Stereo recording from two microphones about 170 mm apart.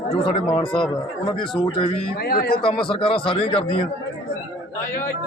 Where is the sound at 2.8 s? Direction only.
30° left (ahead or behind).